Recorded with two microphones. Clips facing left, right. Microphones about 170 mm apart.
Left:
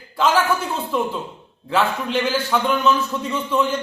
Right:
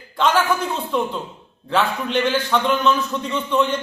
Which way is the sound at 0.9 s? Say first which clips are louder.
Left 1 dB; 5° left (ahead or behind).